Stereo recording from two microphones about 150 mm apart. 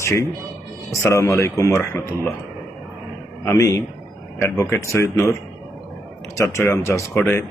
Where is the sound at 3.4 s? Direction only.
20° left (ahead or behind).